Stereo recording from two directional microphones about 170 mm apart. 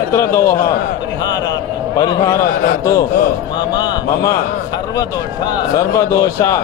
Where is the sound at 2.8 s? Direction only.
20° left (ahead or behind).